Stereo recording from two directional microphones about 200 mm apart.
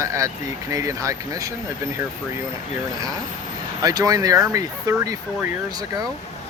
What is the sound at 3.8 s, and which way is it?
Speech, 20° right (ahead or behind).